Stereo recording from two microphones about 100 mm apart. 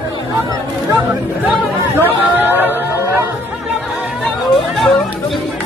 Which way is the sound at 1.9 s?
20° right (ahead or behind).